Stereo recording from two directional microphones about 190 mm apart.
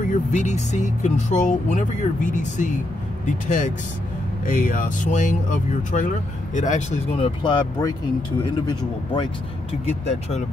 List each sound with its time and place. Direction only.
0.0 s speech: 40° left (ahead or behind); by 7.9 s 25° left (ahead or behind)
9.1 s speech: 30° left (ahead or behind)